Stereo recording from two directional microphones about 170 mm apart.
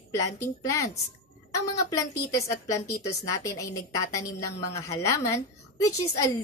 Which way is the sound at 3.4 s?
20° left (ahead or behind).